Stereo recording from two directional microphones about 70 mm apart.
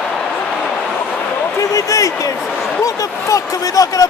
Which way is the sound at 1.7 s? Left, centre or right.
Left.